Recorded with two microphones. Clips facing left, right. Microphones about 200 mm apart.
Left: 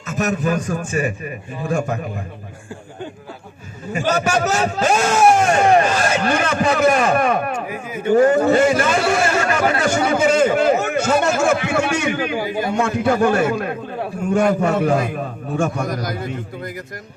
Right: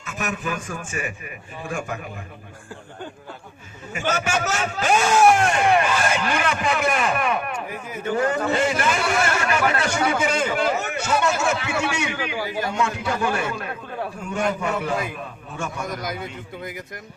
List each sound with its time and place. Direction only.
0.0 s a man's voice: 40° left (ahead or behind)
3.9 s a man's voice: 35° left (ahead or behind)
16.0 s a man's voice: centre (ahead or behind)